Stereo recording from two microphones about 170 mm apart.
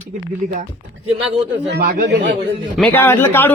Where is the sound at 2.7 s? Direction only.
10° left (ahead or behind).